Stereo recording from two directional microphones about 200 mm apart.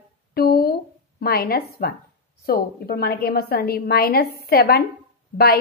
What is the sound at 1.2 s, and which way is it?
A woman's voice, 50° left (ahead or behind).